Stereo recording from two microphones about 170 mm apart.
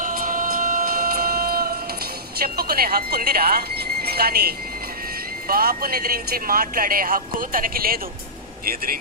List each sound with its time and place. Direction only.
0.0 s music: 55° right (ahead or behind)
2.4 s speech: 65° right (ahead or behind)